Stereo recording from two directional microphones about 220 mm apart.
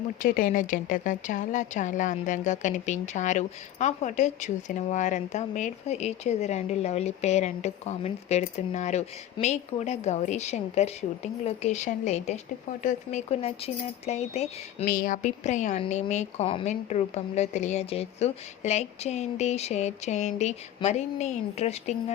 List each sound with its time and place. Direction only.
0.2 s a woman's voice: 40° left (ahead or behind)
14.8 s a woman's voice: 40° left (ahead or behind)